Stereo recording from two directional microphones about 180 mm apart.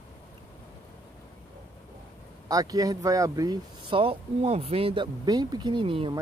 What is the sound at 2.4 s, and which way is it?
Speech, 20° right (ahead or behind).